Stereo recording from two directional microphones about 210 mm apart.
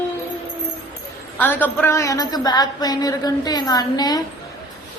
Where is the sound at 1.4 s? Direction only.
10° left (ahead or behind).